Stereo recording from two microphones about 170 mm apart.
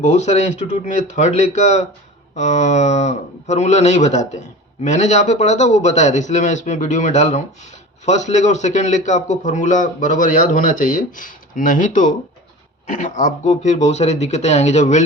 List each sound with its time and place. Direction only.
0.0 s a man's voice: 40° left (ahead or behind)